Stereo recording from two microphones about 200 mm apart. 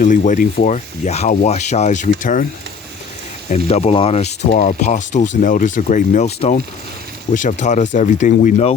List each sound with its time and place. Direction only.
0.0 s speech: 40° left (ahead or behind)
3.7 s speech: 30° left (ahead or behind)